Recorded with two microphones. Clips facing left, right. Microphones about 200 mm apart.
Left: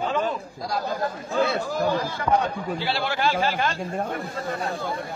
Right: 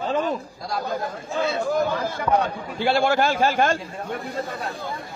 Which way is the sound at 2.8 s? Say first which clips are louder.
Right 7 dB; 50° right (ahead or behind).